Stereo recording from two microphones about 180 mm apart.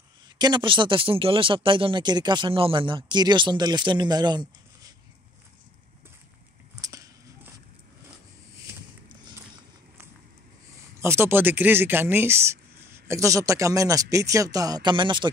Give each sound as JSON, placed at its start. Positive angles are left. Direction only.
{"t": 0.4, "sound": "speech", "side_deg": -25}
{"t": 6.8, "sound": "a sound", "side_deg": -20}
{"t": 11.0, "sound": "speech", "side_deg": -15}